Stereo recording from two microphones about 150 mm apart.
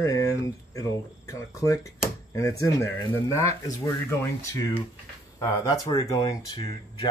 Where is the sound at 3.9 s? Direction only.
20° left (ahead or behind).